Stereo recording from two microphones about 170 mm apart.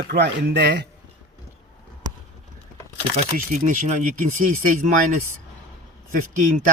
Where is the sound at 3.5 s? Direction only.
50° right (ahead or behind).